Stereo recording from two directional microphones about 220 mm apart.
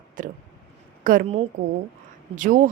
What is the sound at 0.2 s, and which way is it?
A woman's voice, 35° right (ahead or behind).